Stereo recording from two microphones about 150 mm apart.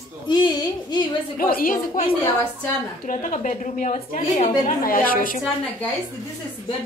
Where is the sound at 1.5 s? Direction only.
70° left (ahead or behind).